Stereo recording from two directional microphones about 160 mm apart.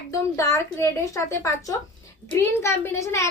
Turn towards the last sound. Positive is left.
turn(degrees=15)  # may be behind; listen again after turning